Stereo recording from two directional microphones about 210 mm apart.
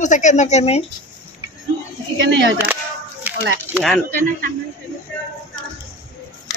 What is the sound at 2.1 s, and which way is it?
Speech, 60° right (ahead or behind).